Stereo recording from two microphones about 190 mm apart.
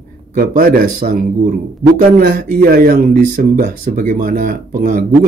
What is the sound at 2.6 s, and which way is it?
A man's voice, 50° right (ahead or behind).